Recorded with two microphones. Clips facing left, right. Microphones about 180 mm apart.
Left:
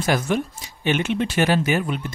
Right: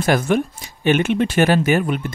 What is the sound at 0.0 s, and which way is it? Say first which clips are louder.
Speech: right 4 dB; 55° right (ahead or behind).